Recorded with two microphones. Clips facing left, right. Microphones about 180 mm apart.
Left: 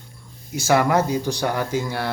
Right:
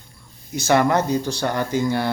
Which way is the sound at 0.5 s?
5° left (ahead or behind).